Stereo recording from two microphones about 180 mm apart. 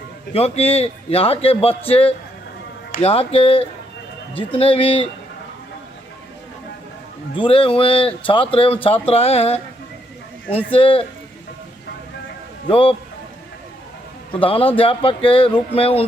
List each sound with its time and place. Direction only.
0.3 s speech: 35° left (ahead or behind)
7.3 s speech: 30° left (ahead or behind)
10.7 s speech: 30° left (ahead or behind)
12.6 s speech: 30° left (ahead or behind)
14.3 s speech: 30° left (ahead or behind)